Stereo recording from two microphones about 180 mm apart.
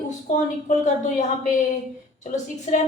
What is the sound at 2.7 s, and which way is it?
Speech, 35° left (ahead or behind).